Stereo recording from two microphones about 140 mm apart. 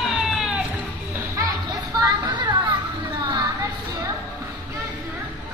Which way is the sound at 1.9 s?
30° right (ahead or behind).